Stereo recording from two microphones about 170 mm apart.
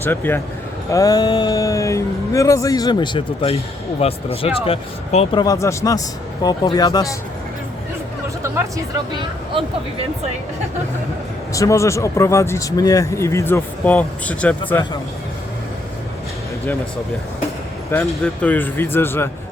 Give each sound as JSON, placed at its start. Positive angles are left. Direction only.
{"t": 0.0, "sound": "speech", "side_deg": 10}
{"t": 5.4, "sound": "speech", "side_deg": 20}
{"t": 11.5, "sound": "speech", "side_deg": 20}
{"t": 18.1, "sound": "speech", "side_deg": 5}